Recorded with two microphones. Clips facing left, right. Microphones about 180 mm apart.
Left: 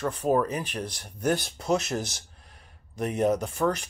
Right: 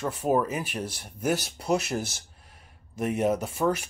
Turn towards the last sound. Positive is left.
turn(degrees=-10)  # may be behind; listen again after turning